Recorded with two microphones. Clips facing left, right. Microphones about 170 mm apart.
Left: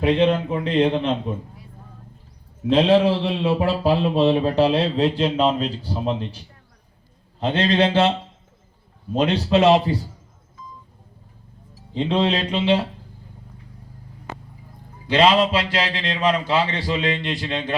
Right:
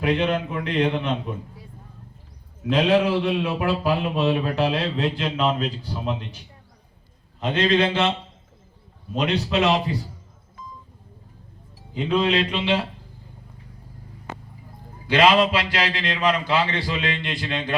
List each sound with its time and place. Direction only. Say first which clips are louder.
0.0 s a man's voice: left 4 dB; 30° left (ahead or behind)
2.6 s a man's voice: left 3 dB; 30° left (ahead or behind)
9.1 s a man's voice: left 4 dB; 30° left (ahead or behind)
11.9 s a man's voice: left 1 dB; 30° left (ahead or behind)
15.0 s a man's voice: left 1 dB; 30° left (ahead or behind)